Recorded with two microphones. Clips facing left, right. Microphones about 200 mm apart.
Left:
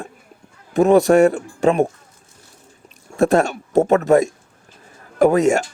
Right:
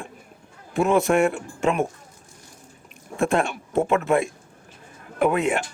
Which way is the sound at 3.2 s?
40° left (ahead or behind).